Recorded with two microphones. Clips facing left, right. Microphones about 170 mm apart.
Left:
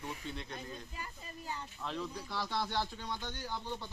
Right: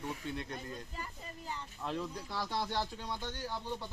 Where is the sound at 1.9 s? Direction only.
15° right (ahead or behind).